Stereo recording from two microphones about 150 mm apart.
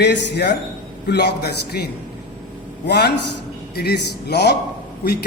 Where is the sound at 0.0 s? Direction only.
90° left.